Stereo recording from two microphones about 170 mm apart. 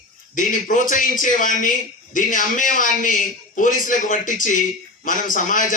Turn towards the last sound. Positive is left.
turn(degrees=50)  # may be behind; listen again after turning